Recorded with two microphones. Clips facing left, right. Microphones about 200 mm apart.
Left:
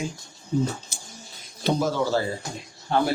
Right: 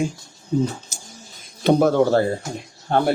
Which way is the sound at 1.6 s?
60° right (ahead or behind).